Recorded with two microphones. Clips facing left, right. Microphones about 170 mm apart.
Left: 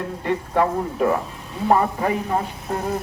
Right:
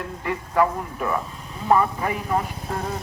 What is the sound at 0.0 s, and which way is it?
Speech, 30° left (ahead or behind).